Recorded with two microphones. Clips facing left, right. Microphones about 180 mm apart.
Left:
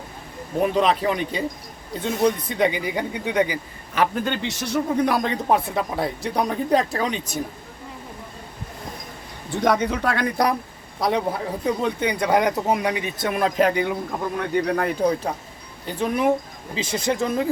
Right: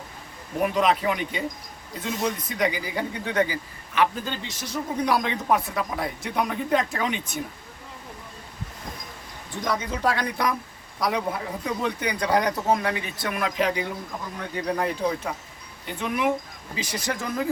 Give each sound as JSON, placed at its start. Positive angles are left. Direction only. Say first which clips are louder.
{"t": 0.6, "sound": "a man's voice", "louder": "left 2 dB", "side_deg": 30}
{"t": 4.1, "sound": "speech", "louder": "left 7 dB", "side_deg": 65}
{"t": 9.6, "sound": "speech", "louder": "left 7 dB", "side_deg": 65}
{"t": 11.0, "sound": "a man's voice", "louder": "left 4 dB", "side_deg": 30}
{"t": 13.6, "sound": "speech", "louder": "left 6 dB", "side_deg": 55}
{"t": 15.3, "sound": "speech", "louder": "left 4 dB", "side_deg": 35}
{"t": 16.7, "sound": "a man's voice", "louder": "left 6 dB", "side_deg": 25}